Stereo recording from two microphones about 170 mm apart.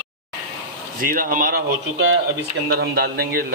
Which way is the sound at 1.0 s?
55° right (ahead or behind).